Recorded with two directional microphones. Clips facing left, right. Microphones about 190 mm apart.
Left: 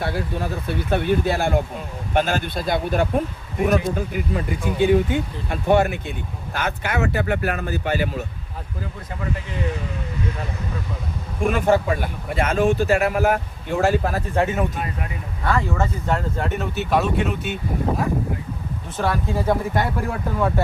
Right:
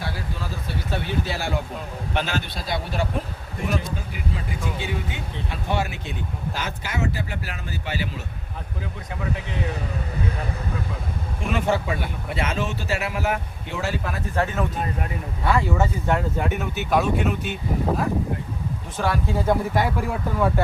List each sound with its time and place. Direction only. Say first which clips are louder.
0.0 s speech: left 6 dB; 60° left (ahead or behind)
11.4 s speech: left 5 dB; 50° left (ahead or behind)
14.3 s speech: left 2 dB; 15° left (ahead or behind)
15.4 s speech: even; 10° right (ahead or behind)